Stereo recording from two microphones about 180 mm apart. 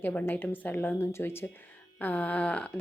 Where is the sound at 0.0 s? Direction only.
10° left (ahead or behind).